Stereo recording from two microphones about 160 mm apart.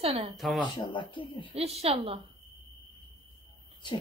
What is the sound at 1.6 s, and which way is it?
Speech, 40° right (ahead or behind).